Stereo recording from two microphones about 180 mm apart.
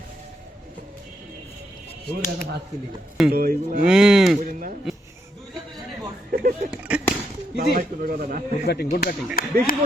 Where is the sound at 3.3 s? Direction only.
55° right (ahead or behind).